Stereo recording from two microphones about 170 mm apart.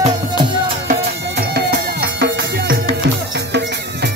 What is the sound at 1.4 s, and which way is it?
Music, 65° right (ahead or behind).